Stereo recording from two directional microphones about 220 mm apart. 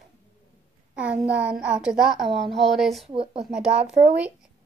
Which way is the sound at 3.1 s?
25° right (ahead or behind).